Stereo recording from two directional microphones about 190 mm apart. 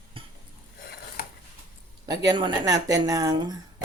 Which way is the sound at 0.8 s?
55° left (ahead or behind).